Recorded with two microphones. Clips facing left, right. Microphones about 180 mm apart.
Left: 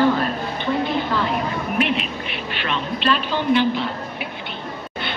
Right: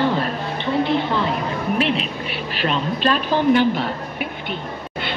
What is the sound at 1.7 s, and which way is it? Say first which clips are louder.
A woman's voice: even; 30° right (ahead or behind).